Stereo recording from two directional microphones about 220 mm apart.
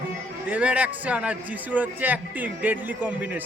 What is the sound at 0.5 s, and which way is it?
Music, 5° right (ahead or behind).